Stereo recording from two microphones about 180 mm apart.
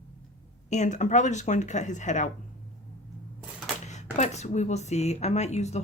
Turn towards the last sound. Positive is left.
turn(degrees=40)  # may be behind; listen again after turning